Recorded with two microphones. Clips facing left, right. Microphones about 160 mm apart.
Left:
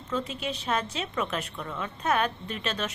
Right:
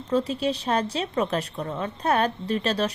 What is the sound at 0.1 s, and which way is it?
A woman's voice, 35° right (ahead or behind).